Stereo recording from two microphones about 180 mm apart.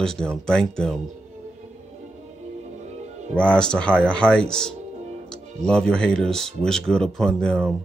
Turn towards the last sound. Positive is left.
turn(degrees=5)  # may be behind; listen again after turning